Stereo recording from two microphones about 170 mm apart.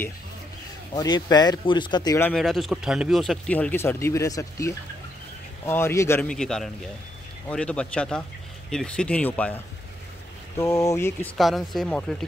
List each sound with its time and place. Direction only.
0.9 s speech: 25° left (ahead or behind)
2.3 s speech: centre (ahead or behind)
6.3 s speech: 5° left (ahead or behind)
10.6 s speech: 20° left (ahead or behind)
11.3 s speech: centre (ahead or behind)